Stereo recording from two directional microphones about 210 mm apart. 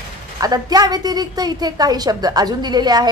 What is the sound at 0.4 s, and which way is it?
A woman's voice, 20° right (ahead or behind).